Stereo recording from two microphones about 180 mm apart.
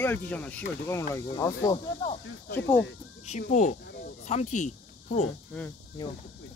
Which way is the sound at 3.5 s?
45° left (ahead or behind).